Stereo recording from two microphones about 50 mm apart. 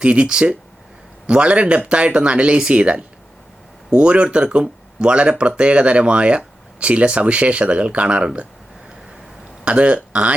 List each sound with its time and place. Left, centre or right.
0.0 s speech: right
9.6 s speech: right